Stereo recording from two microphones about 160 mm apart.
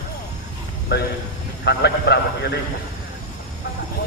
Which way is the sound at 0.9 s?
90° left.